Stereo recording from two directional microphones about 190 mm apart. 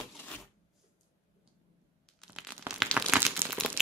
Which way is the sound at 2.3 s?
5° right (ahead or behind).